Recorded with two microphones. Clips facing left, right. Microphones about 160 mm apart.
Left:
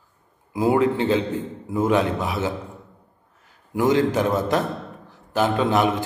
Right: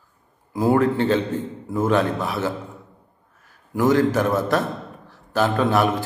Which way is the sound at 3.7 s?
15° left (ahead or behind).